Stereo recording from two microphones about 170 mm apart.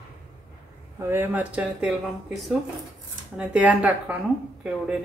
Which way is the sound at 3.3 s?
5° right (ahead or behind).